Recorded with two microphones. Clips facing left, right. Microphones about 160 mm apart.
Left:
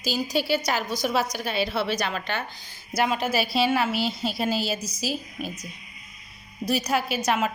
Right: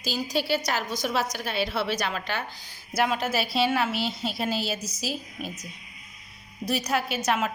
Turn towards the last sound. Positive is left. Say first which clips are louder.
# left 2 dB
turn(degrees=0)  # may be behind; listen again after turning